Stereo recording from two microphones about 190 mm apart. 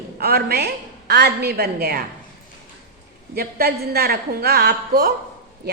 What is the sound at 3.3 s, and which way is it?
A woman's voice, 55° right (ahead or behind).